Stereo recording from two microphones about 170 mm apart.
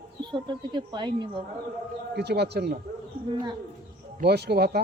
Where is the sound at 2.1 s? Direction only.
75° right (ahead or behind).